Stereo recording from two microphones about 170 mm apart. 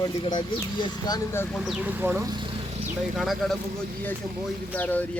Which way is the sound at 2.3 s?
30° right (ahead or behind).